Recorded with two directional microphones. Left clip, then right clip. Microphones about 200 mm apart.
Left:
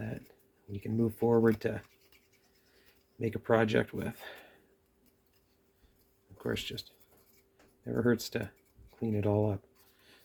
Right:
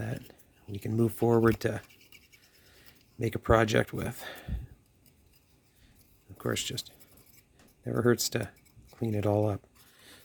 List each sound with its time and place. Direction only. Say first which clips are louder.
0.7 s speech: right 3 dB; 35° right (ahead or behind)
3.2 s speech: right 3 dB; 35° right (ahead or behind)
6.3 s speech: right 3 dB; 35° right (ahead or behind)
7.9 s speech: right 4 dB; 35° right (ahead or behind)